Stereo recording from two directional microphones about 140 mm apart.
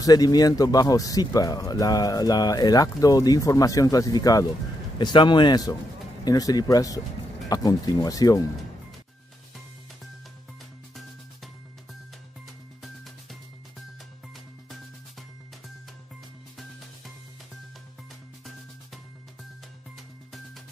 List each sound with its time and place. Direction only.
0.0 s speech: 30° left (ahead or behind)
12.8 s music: centre (ahead or behind)